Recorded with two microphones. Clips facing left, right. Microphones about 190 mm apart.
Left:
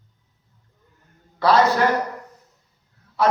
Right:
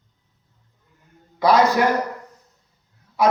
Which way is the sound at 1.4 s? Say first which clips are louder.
Right 1 dB; 15° right (ahead or behind).